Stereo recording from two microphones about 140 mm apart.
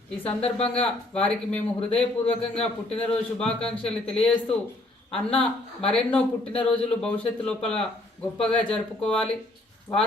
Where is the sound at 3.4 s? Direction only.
5° left (ahead or behind).